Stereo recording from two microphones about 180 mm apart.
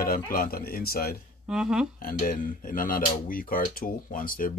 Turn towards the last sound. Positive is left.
turn(degrees=50)  # may be behind; listen again after turning